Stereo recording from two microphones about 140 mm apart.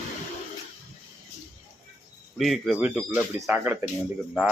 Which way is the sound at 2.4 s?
Centre (ahead or behind).